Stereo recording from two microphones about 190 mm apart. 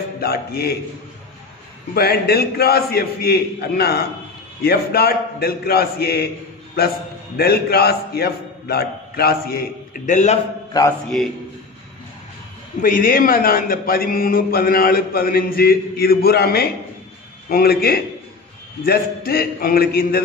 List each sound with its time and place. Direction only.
0.2 s a man's voice: 55° left (ahead or behind)
2.0 s a man's voice: 55° left (ahead or behind)
7.3 s a man's voice: 55° left (ahead or behind); by 10.4 s 40° left (ahead or behind)
11.1 s a man's voice: centre (ahead or behind)
12.8 s a man's voice: 45° left (ahead or behind)